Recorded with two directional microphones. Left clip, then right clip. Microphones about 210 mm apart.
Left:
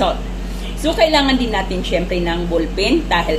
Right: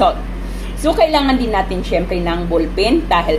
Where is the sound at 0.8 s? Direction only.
20° right (ahead or behind).